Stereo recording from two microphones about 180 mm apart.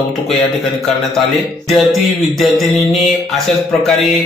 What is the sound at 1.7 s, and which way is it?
Speech, centre (ahead or behind).